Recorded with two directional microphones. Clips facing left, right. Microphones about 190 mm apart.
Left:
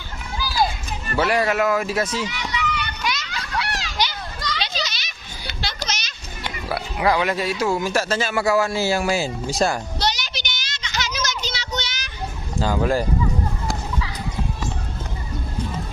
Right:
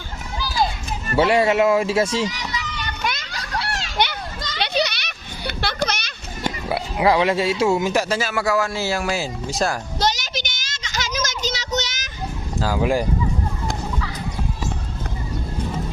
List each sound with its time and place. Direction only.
1.1 s a child's voice: 25° right (ahead or behind); by 3.2 s 50° right (ahead or behind)
3.2 s children playing: 30° right (ahead or behind)
3.9 s children playing: 60° right (ahead or behind)
4.6 s a sound: 65° right (ahead or behind)
6.7 s speech: 25° right (ahead or behind); by 9.7 s centre (ahead or behind)
10.0 s child singing: 45° right (ahead or behind)
12.5 s speech: 5° right (ahead or behind)